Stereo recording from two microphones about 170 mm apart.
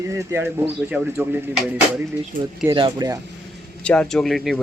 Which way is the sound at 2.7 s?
25° right (ahead or behind).